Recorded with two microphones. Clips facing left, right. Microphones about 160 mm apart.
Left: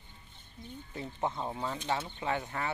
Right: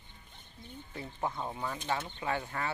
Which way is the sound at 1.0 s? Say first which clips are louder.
Left 2 dB; 20° left (ahead or behind).